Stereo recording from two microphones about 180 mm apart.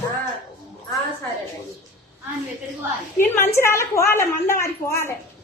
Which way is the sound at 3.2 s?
10° left (ahead or behind).